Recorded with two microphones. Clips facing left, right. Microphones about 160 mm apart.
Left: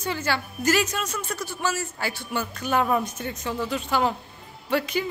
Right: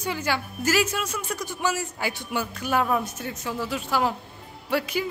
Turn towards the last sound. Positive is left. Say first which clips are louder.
# left 1 dB
turn(degrees=-5)  # may be behind; listen again after turning